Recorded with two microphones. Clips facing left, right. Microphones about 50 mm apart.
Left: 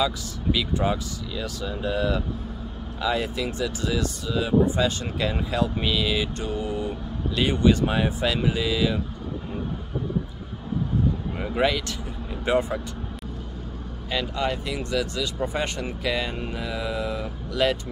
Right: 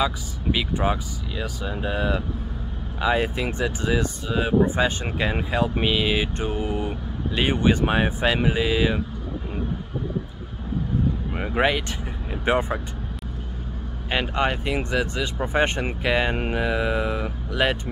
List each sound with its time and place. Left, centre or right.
0.0 s speech: right
11.3 s speech: right
14.1 s speech: right